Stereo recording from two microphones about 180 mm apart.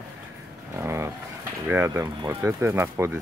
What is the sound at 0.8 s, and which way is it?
Speech, 15° right (ahead or behind).